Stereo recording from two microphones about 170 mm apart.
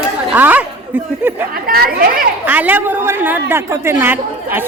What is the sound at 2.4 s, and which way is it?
A woman's voice, 10° right (ahead or behind).